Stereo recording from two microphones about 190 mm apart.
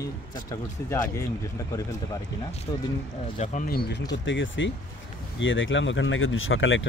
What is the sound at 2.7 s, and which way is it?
Speech, 25° left (ahead or behind).